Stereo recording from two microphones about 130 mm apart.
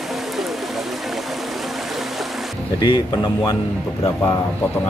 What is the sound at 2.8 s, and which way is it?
Speech, 40° left (ahead or behind).